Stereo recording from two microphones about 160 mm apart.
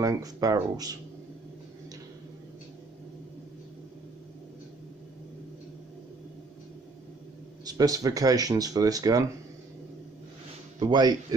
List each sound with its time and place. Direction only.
0.0 s speech: 20° right (ahead or behind)
7.6 s speech: 25° right (ahead or behind)
10.8 s speech: 25° right (ahead or behind)